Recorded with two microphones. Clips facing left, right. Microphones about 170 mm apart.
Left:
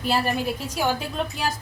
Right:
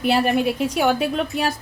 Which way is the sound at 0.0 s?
70° right (ahead or behind).